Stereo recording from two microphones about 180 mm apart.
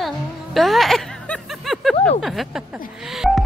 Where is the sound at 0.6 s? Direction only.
Centre (ahead or behind).